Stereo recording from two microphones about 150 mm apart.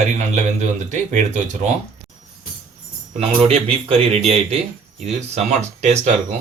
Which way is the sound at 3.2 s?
40° right (ahead or behind).